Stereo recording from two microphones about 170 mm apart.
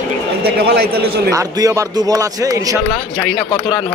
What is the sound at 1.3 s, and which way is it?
A man's voice, 20° right (ahead or behind).